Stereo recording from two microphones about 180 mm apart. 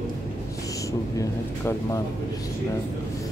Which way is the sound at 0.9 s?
15° left (ahead or behind).